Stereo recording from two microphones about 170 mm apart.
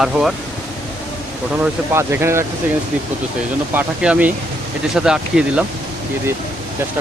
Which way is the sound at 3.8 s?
10° right (ahead or behind).